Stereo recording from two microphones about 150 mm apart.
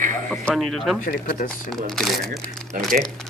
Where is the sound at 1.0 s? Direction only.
65° left (ahead or behind).